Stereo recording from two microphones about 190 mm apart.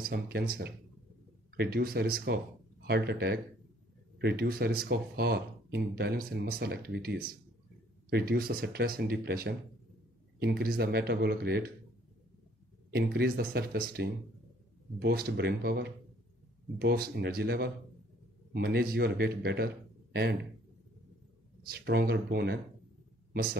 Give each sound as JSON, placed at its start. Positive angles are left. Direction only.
{"t": 0.0, "sound": "speech", "side_deg": -55}
{"t": 12.9, "sound": "speech", "side_deg": -60}
{"t": 21.6, "sound": "speech", "side_deg": -55}